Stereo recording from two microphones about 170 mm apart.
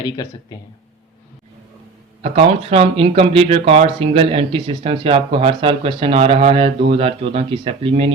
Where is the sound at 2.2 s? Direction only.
35° right (ahead or behind).